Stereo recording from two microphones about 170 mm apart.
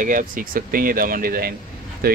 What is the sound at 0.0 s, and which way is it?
Speech, 50° right (ahead or behind).